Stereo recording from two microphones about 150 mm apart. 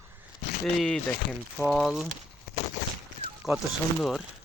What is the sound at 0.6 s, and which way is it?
Speech, centre (ahead or behind).